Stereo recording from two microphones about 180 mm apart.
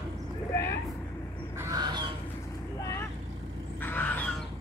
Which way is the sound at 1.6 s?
20° right (ahead or behind).